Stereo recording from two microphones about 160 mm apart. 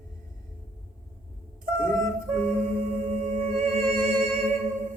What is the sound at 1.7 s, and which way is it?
Music, 15° left (ahead or behind).